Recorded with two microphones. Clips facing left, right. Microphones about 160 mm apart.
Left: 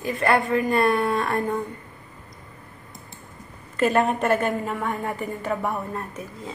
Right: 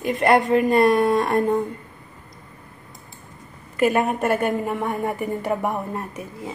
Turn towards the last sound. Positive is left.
turn(degrees=-15)  # may be behind; listen again after turning